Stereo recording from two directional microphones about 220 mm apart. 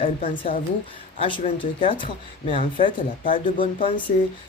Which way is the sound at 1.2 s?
20° left (ahead or behind).